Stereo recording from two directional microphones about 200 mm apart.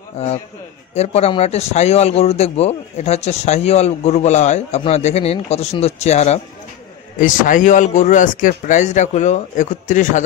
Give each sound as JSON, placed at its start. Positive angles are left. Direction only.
{"t": 0.9, "sound": "a man's voice", "side_deg": 30}